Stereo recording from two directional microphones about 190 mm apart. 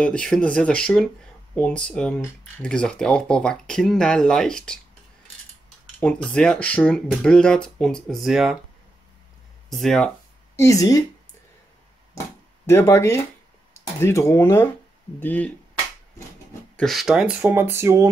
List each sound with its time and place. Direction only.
0.0 s speech: 5° left (ahead or behind)
5.9 s speech: 5° left (ahead or behind)
9.7 s a sound: centre (ahead or behind)
10.6 s speech: 15° left (ahead or behind)
12.6 s speech: 15° left (ahead or behind)
16.7 s speech: centre (ahead or behind); by 18.1 s 15° right (ahead or behind)